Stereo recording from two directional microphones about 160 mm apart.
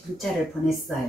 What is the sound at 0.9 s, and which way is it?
Speech, centre (ahead or behind).